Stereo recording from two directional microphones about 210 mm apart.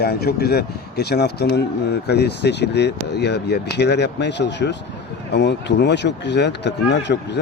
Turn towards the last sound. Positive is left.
turn(degrees=55)  # may be behind; listen again after turning